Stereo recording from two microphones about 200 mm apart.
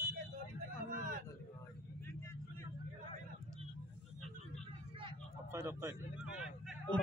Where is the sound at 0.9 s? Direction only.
40° right (ahead or behind).